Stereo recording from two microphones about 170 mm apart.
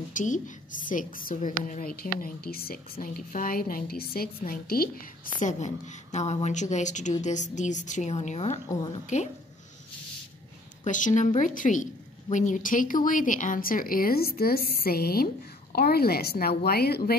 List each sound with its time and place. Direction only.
0.1 s a woman's voice: 50° left (ahead or behind)
2.2 s a woman's voice: 60° left (ahead or behind); by 9.3 s 45° left (ahead or behind)
10.9 s a woman's voice: 50° left (ahead or behind); by 17.2 s 65° left (ahead or behind)